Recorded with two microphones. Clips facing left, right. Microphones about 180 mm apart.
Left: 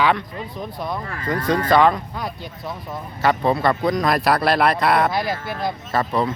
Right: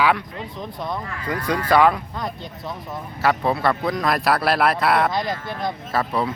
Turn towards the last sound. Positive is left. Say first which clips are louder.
# left 2 dB
turn(degrees=-5)  # may be behind; listen again after turning